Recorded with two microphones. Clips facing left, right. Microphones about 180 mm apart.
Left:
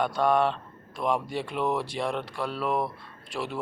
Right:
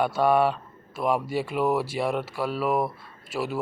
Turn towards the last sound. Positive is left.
turn(degrees=-5)  # may be behind; listen again after turning